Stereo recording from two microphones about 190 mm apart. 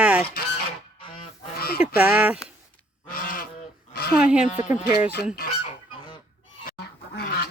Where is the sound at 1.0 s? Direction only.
30° left (ahead or behind).